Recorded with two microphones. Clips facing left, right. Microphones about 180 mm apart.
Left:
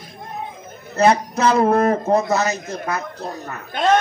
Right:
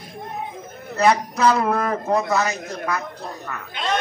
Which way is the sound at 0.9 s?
25° left (ahead or behind).